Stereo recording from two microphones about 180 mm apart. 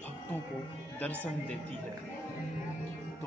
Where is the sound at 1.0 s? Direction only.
5° left (ahead or behind).